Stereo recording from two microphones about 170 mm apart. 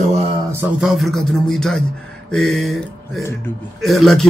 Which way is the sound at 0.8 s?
Centre (ahead or behind).